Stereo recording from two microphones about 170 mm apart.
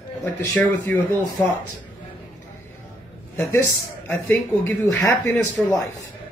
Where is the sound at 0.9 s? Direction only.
10° left (ahead or behind).